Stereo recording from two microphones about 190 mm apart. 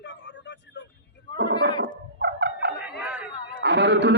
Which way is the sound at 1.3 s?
65° right (ahead or behind).